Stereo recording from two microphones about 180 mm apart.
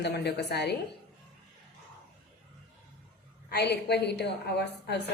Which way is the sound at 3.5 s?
65° left (ahead or behind).